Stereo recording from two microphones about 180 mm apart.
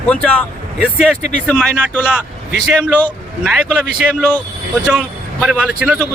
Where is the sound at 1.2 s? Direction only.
40° left (ahead or behind).